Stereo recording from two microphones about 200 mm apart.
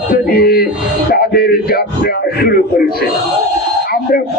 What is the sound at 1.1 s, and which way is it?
A man's voice, 50° left (ahead or behind).